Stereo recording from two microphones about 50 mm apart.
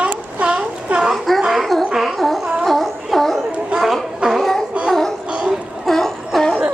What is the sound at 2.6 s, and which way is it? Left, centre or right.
Music, centre.